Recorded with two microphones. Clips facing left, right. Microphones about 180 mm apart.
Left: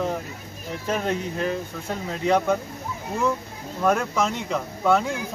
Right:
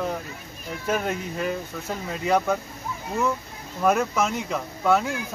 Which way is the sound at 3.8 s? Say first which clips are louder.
Even; 5° right (ahead or behind).